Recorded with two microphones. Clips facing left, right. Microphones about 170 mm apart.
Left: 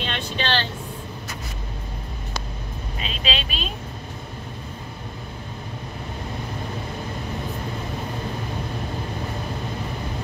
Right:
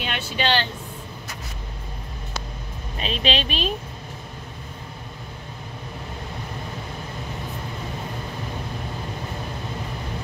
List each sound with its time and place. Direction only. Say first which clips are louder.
0.0 s vehicle: right 2 dB; 10° right (ahead or behind)
3.0 s speech: right 5 dB; 30° right (ahead or behind)